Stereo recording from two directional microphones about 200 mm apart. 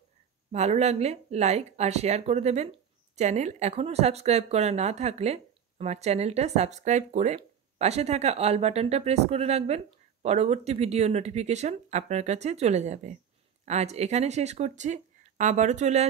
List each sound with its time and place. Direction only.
0.5 s speech: 35° right (ahead or behind)